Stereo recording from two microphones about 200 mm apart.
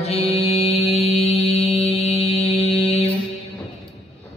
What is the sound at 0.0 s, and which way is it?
Music, 30° left (ahead or behind).